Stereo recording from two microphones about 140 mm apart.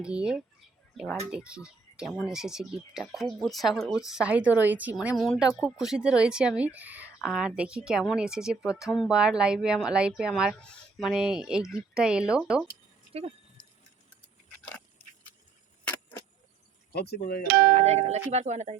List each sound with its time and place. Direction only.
0.0 s speech: 5° right (ahead or behind)
4.9 s speech: centre (ahead or behind)
15.8 s vehicle: 15° left (ahead or behind)
17.4 s speech: 90° right
17.7 s speech: 50° right (ahead or behind)